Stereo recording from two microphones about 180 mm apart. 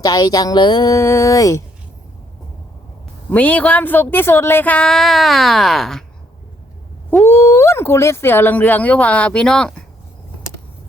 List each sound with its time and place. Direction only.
0.0 s a woman's voice: 20° left (ahead or behind)
3.2 s speech: 10° left (ahead or behind)
7.1 s speech: 10° left (ahead or behind)